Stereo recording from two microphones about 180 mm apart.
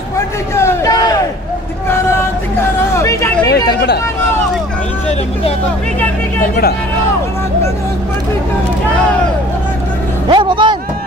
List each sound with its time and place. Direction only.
0.6 s crowd: 15° left (ahead or behind)
2.9 s hubbub: 15° left (ahead or behind)
10.2 s a man's voice: 25° right (ahead or behind)